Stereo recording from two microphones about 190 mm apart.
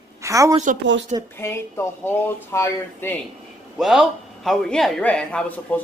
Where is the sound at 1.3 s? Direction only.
15° left (ahead or behind).